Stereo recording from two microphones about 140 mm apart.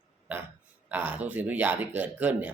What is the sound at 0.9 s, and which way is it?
Speech, 10° right (ahead or behind).